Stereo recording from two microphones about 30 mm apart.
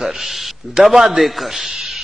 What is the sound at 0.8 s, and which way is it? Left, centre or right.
Speech, centre.